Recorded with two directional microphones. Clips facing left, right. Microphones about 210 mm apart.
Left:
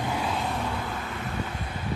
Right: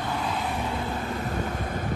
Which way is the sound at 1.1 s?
45° right (ahead or behind).